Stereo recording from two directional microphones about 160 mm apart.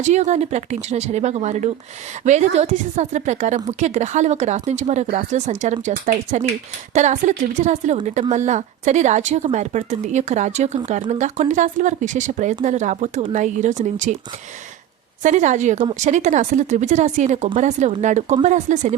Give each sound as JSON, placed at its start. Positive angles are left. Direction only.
{"t": 0.0, "sound": "a woman's voice", "side_deg": -45}
{"t": 15.2, "sound": "a woman's voice", "side_deg": -50}